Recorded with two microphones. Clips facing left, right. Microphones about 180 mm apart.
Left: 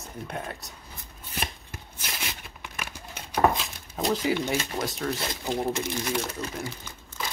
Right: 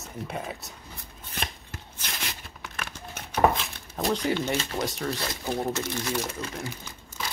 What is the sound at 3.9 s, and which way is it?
Speech, centre (ahead or behind).